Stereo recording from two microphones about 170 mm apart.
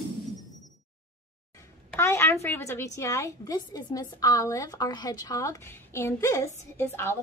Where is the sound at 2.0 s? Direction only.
15° left (ahead or behind).